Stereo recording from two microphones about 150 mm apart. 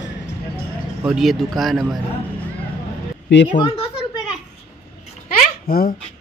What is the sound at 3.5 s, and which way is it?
Speech, 35° left (ahead or behind).